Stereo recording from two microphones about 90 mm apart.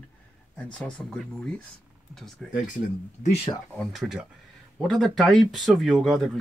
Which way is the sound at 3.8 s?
Centre (ahead or behind).